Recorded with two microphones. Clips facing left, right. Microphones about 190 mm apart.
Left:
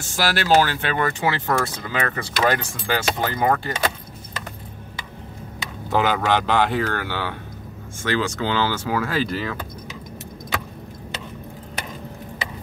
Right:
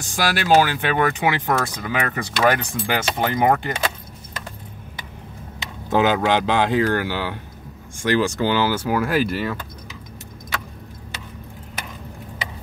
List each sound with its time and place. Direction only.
0.0 s speech: 15° right (ahead or behind)
5.9 s speech: 15° right (ahead or behind)